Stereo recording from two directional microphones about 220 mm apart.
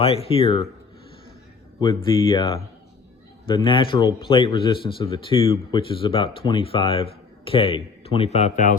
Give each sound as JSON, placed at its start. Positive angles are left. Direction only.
{"t": 0.0, "sound": "a man's voice", "side_deg": 25}
{"t": 1.8, "sound": "a man's voice", "side_deg": 20}